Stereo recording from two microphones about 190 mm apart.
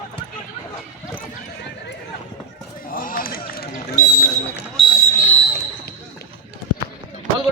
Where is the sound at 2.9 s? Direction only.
45° left (ahead or behind).